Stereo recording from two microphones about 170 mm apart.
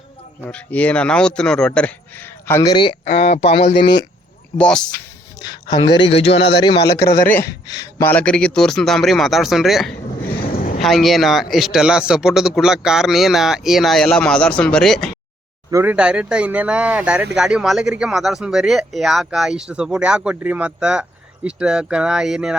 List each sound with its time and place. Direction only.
0.4 s speech: 10° left (ahead or behind); by 2.9 s 25° left (ahead or behind)
3.1 s speech: 65° left (ahead or behind)
4.5 s speech: 5° left (ahead or behind)
5.4 s speech: 25° left (ahead or behind)
6.1 s speech: 40° left (ahead or behind)
7.8 s speech: 20° left (ahead or behind)
8.1 s speech: 5° left (ahead or behind)
10.2 s a sound: 60° left (ahead or behind)
10.8 s speech: centre (ahead or behind)
15.7 s speech: 10° right (ahead or behind)